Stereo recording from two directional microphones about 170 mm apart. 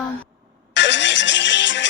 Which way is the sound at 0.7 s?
90° left.